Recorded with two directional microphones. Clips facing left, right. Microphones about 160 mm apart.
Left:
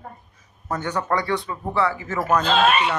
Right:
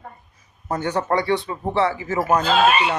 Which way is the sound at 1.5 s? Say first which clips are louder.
Right 2 dB; 25° right (ahead or behind).